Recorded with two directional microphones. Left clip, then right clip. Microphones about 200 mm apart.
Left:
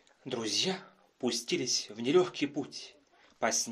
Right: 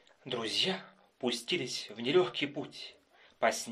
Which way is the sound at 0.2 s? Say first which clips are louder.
Even; 40° left (ahead or behind).